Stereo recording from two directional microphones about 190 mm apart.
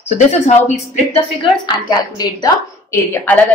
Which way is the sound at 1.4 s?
20° left (ahead or behind).